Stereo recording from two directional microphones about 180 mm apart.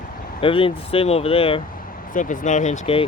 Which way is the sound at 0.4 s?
30° left (ahead or behind).